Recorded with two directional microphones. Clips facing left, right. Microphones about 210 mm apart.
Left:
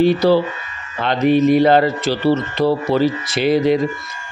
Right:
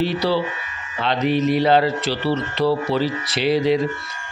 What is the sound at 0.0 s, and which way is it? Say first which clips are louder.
Speech: left 7 dB; 45° left (ahead or behind).